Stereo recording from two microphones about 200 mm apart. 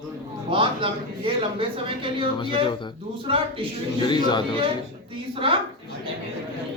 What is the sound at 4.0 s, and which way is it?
Speech, 20° left (ahead or behind).